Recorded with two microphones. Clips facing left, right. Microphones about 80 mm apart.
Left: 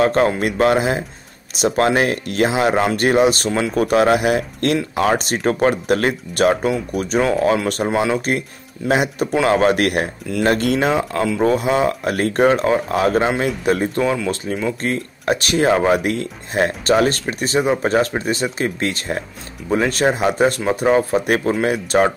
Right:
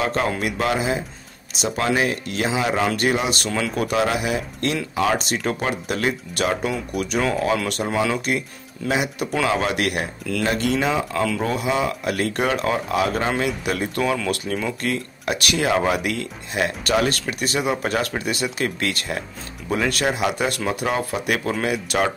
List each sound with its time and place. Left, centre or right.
0.0 s speech: left
7.0 s speech: left